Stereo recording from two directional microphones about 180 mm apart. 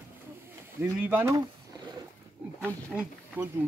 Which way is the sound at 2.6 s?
10° right (ahead or behind).